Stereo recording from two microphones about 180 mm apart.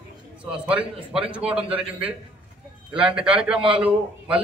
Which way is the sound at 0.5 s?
5° right (ahead or behind).